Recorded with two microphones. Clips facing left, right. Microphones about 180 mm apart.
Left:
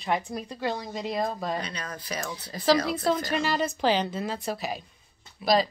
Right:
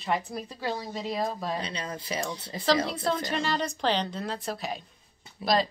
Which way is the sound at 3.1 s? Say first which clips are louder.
Left 4 dB; 5° left (ahead or behind).